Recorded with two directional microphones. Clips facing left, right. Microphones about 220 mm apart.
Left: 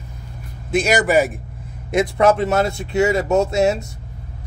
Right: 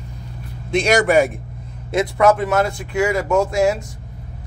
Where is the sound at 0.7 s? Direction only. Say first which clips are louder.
Right 1 dB; 5° left (ahead or behind).